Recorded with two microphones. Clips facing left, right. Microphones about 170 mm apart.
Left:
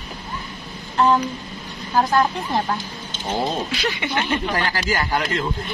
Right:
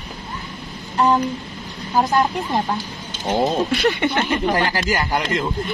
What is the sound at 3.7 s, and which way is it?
Speech, 55° right (ahead or behind).